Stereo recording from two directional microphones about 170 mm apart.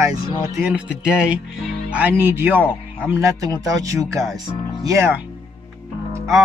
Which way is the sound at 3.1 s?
20° right (ahead or behind).